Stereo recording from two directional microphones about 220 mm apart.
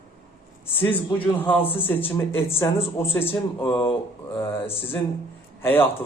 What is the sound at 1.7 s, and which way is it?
Speech, 25° left (ahead or behind).